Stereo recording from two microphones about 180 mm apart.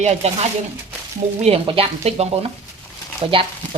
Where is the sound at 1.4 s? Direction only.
35° right (ahead or behind).